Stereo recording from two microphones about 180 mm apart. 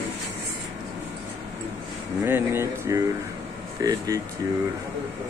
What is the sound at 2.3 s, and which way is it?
Speech, 15° right (ahead or behind).